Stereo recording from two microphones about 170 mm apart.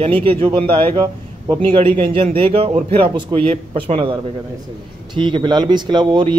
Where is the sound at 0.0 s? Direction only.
30° right (ahead or behind).